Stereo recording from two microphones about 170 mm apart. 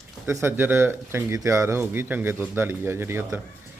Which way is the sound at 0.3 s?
15° right (ahead or behind).